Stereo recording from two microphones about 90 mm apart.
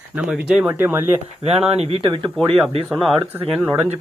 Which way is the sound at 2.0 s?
65° right (ahead or behind).